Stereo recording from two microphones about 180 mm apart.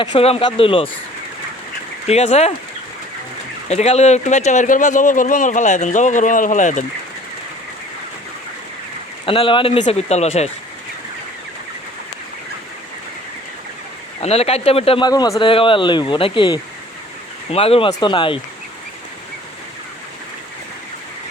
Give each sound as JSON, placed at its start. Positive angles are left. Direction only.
{"t": 0.0, "sound": "speech", "side_deg": 30}
{"t": 2.0, "sound": "speech", "side_deg": 35}
{"t": 3.7, "sound": "speech", "side_deg": 35}
{"t": 9.2, "sound": "speech", "side_deg": 30}
{"t": 14.2, "sound": "speech", "side_deg": 35}